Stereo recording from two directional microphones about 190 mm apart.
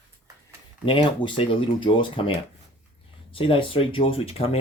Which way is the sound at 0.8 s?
25° left (ahead or behind).